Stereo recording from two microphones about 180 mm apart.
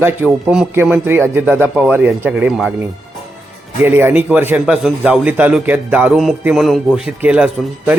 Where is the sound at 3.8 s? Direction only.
10° right (ahead or behind).